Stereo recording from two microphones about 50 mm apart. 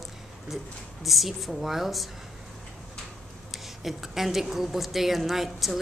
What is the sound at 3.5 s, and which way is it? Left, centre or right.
A woman's voice, centre.